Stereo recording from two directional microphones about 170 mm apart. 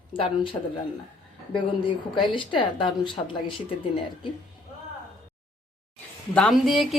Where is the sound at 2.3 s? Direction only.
30° left (ahead or behind).